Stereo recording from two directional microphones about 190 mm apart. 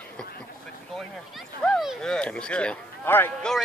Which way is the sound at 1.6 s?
Centre (ahead or behind).